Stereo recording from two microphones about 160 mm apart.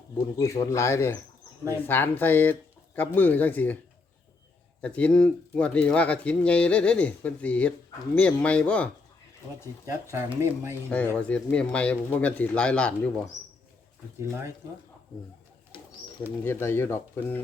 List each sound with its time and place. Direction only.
0.3 s speech: 20° left (ahead or behind)
4.8 s speech: 10° left (ahead or behind)
9.8 s speech: 15° right (ahead or behind)
10.8 s speech: 10° left (ahead or behind)
14.2 s speech: 15° right (ahead or behind)
16.4 s speech: 15° left (ahead or behind)